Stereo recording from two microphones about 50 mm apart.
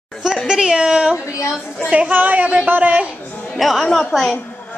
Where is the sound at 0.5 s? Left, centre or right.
Centre.